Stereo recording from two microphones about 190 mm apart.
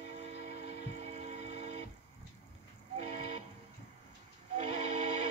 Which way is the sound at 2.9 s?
35° right (ahead or behind).